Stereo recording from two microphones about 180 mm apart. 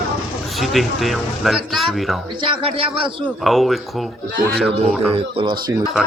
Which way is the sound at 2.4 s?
30° right (ahead or behind).